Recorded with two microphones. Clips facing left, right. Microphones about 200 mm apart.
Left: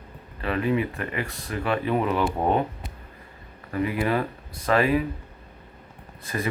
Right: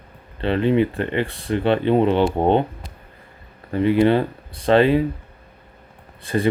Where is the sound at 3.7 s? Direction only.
30° right (ahead or behind).